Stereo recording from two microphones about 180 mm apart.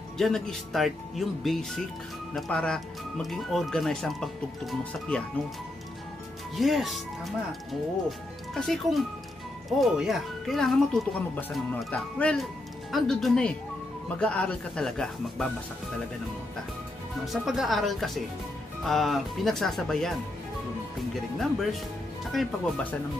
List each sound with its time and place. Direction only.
0.2 s speech: centre (ahead or behind)
6.5 s speech: centre (ahead or behind)
8.5 s speech: centre (ahead or behind)
17.3 s speech: centre (ahead or behind)